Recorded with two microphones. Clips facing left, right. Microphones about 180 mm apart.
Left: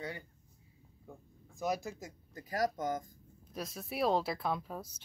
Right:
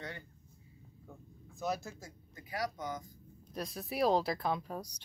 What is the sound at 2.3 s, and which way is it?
Speech, 40° left (ahead or behind).